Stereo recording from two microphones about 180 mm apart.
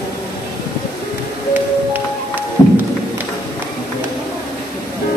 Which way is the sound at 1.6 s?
10° right (ahead or behind).